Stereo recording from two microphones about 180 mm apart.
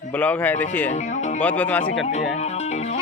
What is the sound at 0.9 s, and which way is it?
Speech, 40° left (ahead or behind).